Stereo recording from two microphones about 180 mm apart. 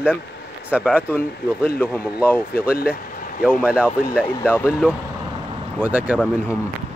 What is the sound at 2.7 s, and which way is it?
Speech, 60° left (ahead or behind).